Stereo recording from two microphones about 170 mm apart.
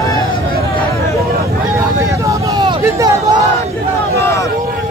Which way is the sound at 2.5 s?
20° right (ahead or behind).